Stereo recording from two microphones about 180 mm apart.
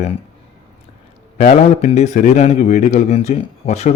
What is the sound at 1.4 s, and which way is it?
A man's voice, 35° left (ahead or behind).